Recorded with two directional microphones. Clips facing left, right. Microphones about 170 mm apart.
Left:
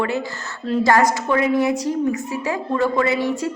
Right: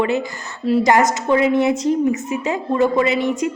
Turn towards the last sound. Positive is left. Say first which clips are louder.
# right 2 dB
turn(degrees=-20)  # may be behind; listen again after turning